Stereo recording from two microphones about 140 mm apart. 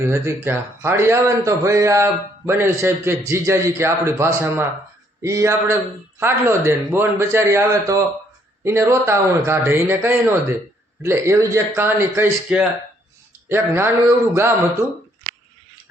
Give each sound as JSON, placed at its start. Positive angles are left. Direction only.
{"t": 0.1, "sound": "a man's voice", "side_deg": -15}